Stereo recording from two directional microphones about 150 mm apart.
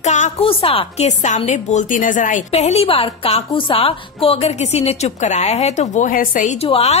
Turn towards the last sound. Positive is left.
turn(degrees=40)  # may be behind; listen again after turning